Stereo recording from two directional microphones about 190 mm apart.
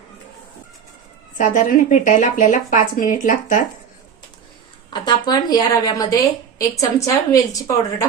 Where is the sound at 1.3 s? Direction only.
45° left (ahead or behind).